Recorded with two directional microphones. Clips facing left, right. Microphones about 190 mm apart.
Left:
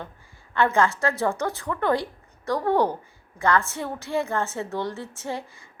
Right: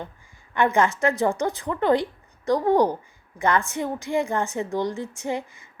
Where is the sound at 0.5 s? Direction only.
15° right (ahead or behind).